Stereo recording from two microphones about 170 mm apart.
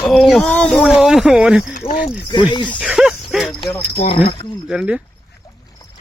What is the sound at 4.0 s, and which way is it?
Speech, 40° left (ahead or behind).